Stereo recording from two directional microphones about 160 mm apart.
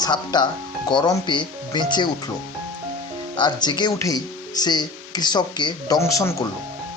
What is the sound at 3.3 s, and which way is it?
Speech, 25° left (ahead or behind).